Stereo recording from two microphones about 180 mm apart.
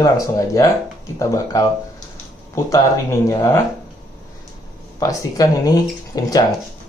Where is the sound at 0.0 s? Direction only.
20° left (ahead or behind).